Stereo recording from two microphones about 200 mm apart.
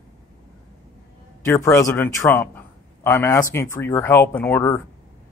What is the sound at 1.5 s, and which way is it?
A man's voice, 15° left (ahead or behind).